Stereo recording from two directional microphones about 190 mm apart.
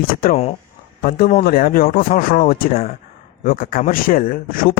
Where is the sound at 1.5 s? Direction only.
50° left (ahead or behind).